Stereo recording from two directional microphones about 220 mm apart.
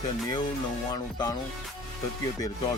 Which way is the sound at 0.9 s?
15° left (ahead or behind).